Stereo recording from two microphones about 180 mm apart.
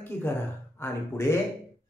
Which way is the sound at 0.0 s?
15° left (ahead or behind).